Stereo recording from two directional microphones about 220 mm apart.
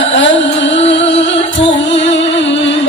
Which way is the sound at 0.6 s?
30° left (ahead or behind).